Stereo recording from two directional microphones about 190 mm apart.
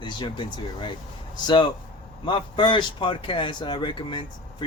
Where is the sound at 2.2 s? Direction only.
25° left (ahead or behind).